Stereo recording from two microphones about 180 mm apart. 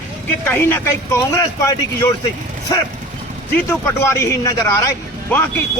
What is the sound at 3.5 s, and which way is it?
Speech, 15° left (ahead or behind).